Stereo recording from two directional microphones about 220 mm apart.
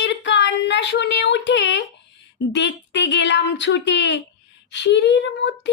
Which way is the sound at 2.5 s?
55° left (ahead or behind).